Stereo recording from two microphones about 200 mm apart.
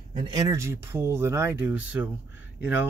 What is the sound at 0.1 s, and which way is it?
Speech, 25° right (ahead or behind).